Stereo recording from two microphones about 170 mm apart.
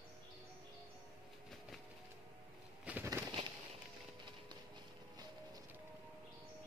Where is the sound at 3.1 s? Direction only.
20° right (ahead or behind).